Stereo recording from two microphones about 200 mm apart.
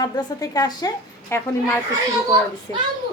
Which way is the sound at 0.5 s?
20° left (ahead or behind).